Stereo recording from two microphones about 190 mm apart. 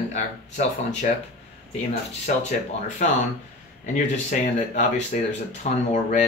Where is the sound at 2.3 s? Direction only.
45° left (ahead or behind).